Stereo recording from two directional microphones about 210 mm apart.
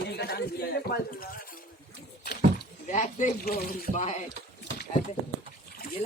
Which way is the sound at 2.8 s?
35° left (ahead or behind).